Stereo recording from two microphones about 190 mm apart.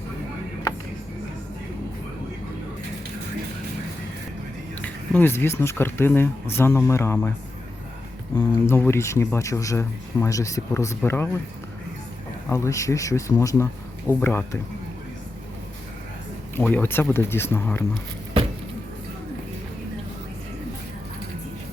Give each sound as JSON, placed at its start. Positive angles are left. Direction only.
{"t": 4.8, "sound": "speech", "side_deg": 10}
{"t": 8.4, "sound": "speech", "side_deg": 15}
{"t": 12.5, "sound": "speech", "side_deg": 15}
{"t": 16.6, "sound": "speech", "side_deg": 10}